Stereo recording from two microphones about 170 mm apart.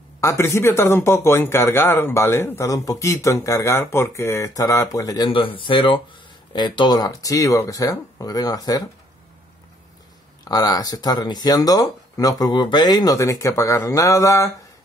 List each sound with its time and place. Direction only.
0.2 s speech: 15° left (ahead or behind)
10.4 s speech: 25° left (ahead or behind)